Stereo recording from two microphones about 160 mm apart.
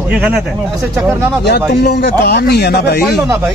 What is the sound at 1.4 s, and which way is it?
Speech, 90° left.